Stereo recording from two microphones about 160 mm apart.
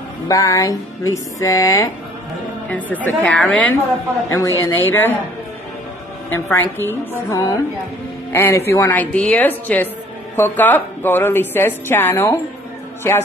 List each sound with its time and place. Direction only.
0.3 s speech: 20° left (ahead or behind)
2.7 s a woman's voice: 10° left (ahead or behind)
4.3 s a woman's voice: 20° left (ahead or behind)
6.3 s a woman's voice: 15° left (ahead or behind)